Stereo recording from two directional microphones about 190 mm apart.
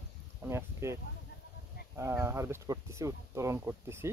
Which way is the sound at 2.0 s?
15° right (ahead or behind).